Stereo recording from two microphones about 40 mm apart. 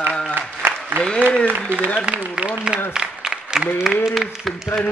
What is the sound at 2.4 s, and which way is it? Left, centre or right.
Applause, right.